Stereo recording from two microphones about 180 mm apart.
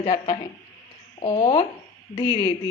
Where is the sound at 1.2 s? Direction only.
30° left (ahead or behind).